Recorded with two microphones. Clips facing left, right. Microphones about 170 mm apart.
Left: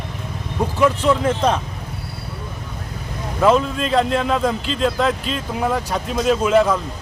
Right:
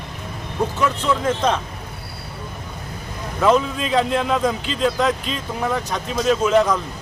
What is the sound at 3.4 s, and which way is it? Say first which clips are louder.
A man's voice: left 1 dB; centre (ahead or behind).